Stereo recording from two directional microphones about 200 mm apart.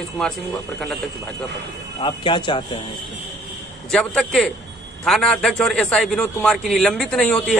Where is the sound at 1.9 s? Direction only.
25° left (ahead or behind).